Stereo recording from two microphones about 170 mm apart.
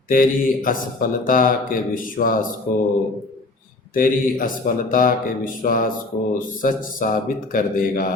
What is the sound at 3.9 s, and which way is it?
Speech, 55° left (ahead or behind).